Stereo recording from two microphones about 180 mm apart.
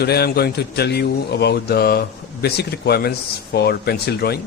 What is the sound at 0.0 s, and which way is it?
Speech, 60° left (ahead or behind).